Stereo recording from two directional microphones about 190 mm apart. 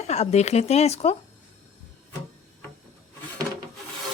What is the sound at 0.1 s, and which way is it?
Speech, 35° left (ahead or behind).